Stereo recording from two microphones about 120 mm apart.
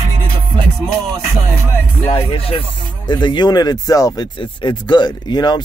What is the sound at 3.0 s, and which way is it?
Speech, 40° left (ahead or behind).